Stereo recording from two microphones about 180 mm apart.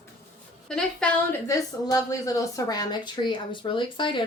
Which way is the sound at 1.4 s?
20° left (ahead or behind).